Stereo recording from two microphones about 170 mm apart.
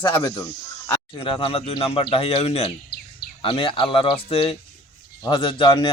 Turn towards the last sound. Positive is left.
turn(degrees=30)  # may be behind; listen again after turning